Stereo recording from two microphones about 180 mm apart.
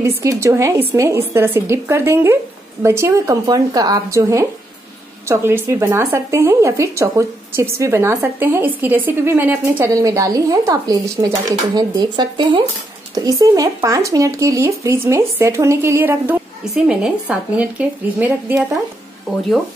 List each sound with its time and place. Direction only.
0.0 s speech: 15° right (ahead or behind)